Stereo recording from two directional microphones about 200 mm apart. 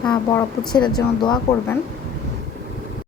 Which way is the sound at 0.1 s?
20° left (ahead or behind).